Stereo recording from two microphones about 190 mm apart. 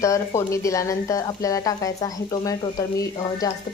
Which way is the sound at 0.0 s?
15° left (ahead or behind).